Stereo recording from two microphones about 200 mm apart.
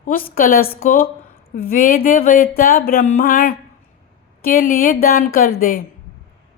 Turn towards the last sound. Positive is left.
turn(degrees=50)  # may be behind; listen again after turning